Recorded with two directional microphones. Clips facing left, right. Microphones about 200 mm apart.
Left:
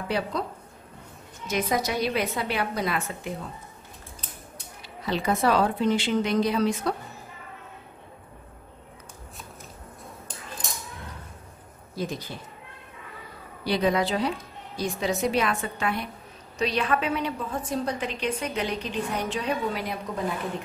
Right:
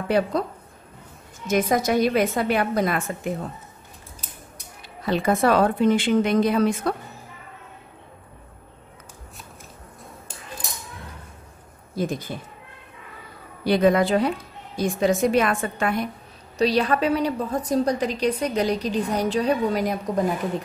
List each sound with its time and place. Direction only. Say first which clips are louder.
0.1 s a woman's voice: right 8 dB; 50° right (ahead or behind)
1.5 s a woman's voice: right 6 dB; 50° right (ahead or behind)
5.0 s a woman's voice: right 4 dB; 50° right (ahead or behind)
11.9 s speech: right 5 dB; 50° right (ahead or behind)
13.7 s a woman's voice: right 6 dB; 50° right (ahead or behind)
16.5 s a woman's voice: right 5 dB; 35° right (ahead or behind)